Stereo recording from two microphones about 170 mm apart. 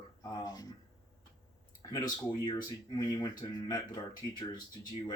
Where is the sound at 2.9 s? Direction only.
25° left (ahead or behind).